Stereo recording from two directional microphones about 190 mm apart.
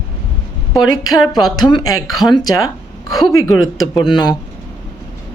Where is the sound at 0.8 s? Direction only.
90° left.